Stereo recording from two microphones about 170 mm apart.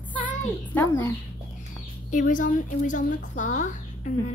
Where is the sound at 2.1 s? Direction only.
50° left (ahead or behind).